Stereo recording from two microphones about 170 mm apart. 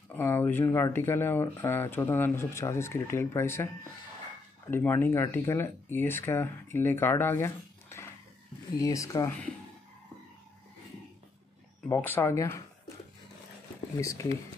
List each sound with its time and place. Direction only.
0.1 s speech: 15° left (ahead or behind)
4.6 s speech: 10° left (ahead or behind)
11.9 s speech: 15° left (ahead or behind)
13.9 s speech: 20° left (ahead or behind)